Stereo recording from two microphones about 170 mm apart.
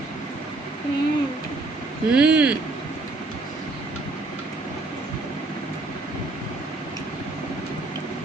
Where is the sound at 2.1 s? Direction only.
5° right (ahead or behind).